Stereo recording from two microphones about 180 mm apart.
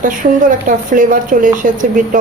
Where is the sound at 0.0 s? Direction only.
50° right (ahead or behind).